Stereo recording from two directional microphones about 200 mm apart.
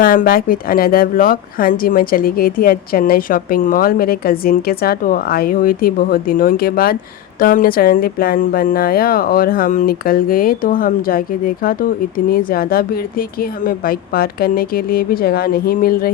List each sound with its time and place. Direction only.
0.0 s a woman's voice: 45° left (ahead or behind)